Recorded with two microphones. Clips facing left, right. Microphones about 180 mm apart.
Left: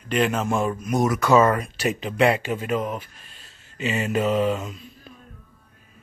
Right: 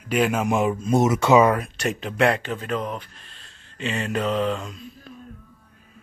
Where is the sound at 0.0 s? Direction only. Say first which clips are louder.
Right 1 dB; 10° right (ahead or behind); by 1.4 s 25° right (ahead or behind).